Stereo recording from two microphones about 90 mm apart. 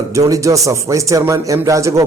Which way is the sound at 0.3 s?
35° right (ahead or behind).